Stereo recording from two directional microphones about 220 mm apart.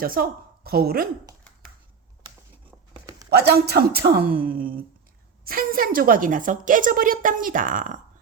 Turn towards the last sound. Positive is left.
turn(degrees=-35)  # may be behind; listen again after turning